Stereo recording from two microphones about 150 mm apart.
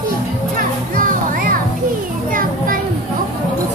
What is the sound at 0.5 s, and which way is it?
Children playing, 65° right (ahead or behind).